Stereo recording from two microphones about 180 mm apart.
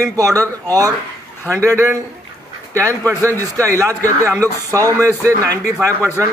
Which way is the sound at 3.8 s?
15° right (ahead or behind).